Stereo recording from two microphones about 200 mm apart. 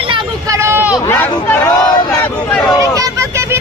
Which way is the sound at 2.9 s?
15° right (ahead or behind).